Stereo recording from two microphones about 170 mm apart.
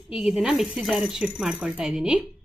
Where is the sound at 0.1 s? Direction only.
5° right (ahead or behind).